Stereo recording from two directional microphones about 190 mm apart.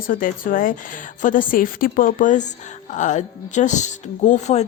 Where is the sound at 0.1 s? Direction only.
45° left (ahead or behind).